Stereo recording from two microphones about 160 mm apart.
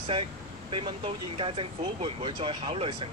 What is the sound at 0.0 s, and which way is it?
Speech, 35° right (ahead or behind).